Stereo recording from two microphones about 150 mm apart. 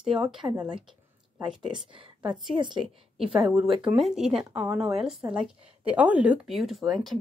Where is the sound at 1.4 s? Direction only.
30° right (ahead or behind).